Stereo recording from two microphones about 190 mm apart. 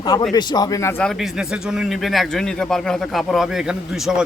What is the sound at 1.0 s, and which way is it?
A man's voice, 5° right (ahead or behind).